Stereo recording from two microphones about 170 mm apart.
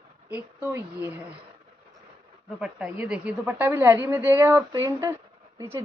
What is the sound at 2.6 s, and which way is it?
A woman's voice, 5° right (ahead or behind).